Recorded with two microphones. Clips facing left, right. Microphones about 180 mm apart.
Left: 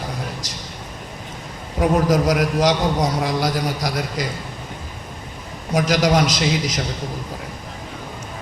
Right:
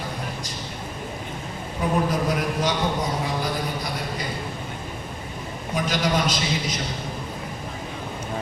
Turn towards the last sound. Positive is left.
turn(degrees=90)